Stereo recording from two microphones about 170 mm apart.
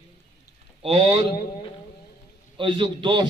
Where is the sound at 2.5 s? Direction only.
30° right (ahead or behind).